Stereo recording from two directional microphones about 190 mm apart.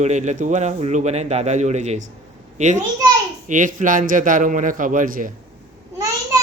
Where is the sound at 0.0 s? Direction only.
40° right (ahead or behind).